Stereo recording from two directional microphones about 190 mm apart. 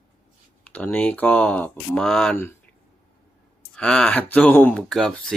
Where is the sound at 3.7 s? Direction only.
5° left (ahead or behind).